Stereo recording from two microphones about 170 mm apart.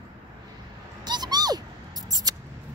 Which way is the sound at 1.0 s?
25° right (ahead or behind).